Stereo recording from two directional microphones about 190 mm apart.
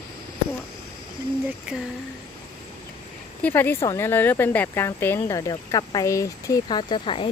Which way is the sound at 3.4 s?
10° left (ahead or behind).